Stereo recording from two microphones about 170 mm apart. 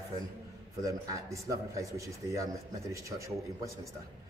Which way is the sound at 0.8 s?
20° right (ahead or behind).